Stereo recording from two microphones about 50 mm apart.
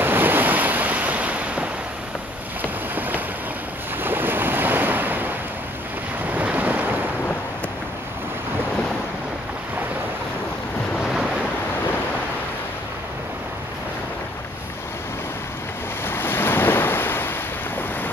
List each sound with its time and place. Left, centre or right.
0.0 s waves: right
2.6 s boat: right
4.0 s waves: right
6.3 s boat: right
16.1 s waves: left